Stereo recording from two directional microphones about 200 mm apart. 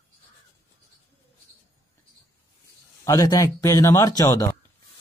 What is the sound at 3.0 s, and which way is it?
Speech, 15° left (ahead or behind).